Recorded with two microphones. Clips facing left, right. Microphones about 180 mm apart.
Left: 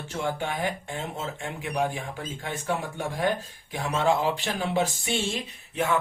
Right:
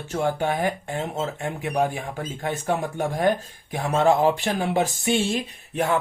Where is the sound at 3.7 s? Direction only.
45° right (ahead or behind).